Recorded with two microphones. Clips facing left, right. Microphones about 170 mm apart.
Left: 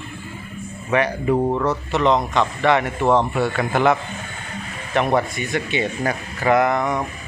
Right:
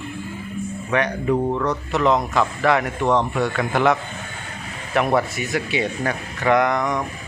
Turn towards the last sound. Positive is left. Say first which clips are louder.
# left 1 dB
turn(degrees=5)  # may be behind; listen again after turning